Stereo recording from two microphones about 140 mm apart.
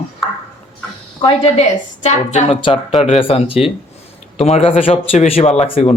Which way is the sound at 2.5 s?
35° left (ahead or behind).